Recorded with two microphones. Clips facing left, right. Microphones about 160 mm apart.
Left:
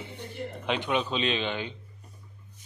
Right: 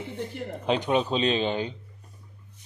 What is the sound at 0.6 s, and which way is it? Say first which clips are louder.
A man's voice: right 4 dB; 35° right (ahead or behind).